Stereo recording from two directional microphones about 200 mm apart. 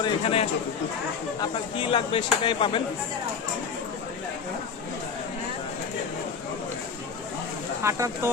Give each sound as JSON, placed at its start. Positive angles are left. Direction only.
{"t": 0.0, "sound": "speech", "side_deg": 25}
{"t": 7.8, "sound": "speech", "side_deg": -15}